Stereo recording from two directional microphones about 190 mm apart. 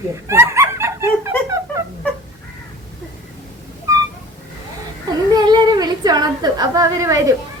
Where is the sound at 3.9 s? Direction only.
15° right (ahead or behind).